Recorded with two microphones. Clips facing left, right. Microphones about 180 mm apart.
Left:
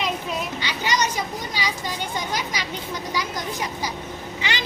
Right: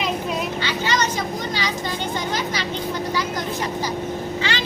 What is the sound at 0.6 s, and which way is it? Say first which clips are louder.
Vehicle: right 1 dB; 15° left (ahead or behind).